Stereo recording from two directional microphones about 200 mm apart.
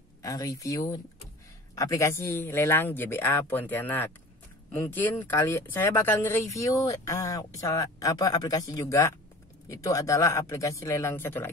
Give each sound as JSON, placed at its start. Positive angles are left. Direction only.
{"t": 0.2, "sound": "speech", "side_deg": 15}